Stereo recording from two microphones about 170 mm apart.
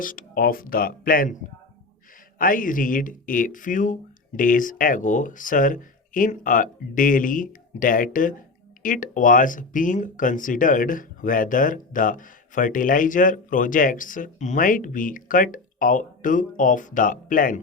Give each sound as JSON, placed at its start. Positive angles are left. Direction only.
{"t": 0.0, "sound": "speech", "side_deg": 55}
{"t": 2.4, "sound": "speech", "side_deg": 55}